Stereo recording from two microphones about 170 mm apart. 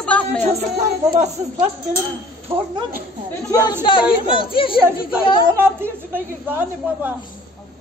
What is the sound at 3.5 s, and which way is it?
Speech, 20° left (ahead or behind).